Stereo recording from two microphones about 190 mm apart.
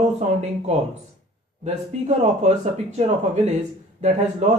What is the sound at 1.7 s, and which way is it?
Speech, 35° right (ahead or behind).